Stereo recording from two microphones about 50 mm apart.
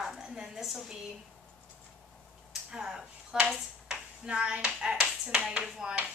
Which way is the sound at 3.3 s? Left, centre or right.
Centre.